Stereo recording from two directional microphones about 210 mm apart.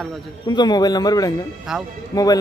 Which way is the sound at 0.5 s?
20° left (ahead or behind).